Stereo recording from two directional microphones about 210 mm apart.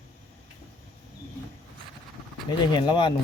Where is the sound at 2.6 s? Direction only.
20° left (ahead or behind).